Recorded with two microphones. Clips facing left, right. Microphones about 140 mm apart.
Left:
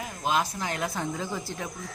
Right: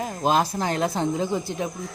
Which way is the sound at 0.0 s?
35° right (ahead or behind).